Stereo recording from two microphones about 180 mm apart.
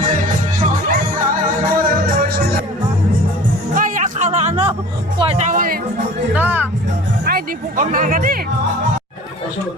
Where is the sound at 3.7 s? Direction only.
45° right (ahead or behind).